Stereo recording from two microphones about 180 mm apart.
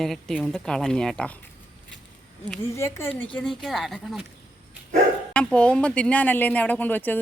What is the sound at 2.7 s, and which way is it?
Speech, 15° left (ahead or behind).